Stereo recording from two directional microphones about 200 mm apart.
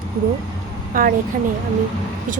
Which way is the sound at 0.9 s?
45° right (ahead or behind).